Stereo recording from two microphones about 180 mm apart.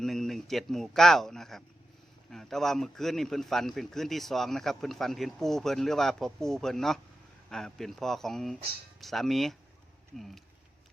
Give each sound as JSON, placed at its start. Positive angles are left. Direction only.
{"t": 0.0, "sound": "a man's voice", "side_deg": 0}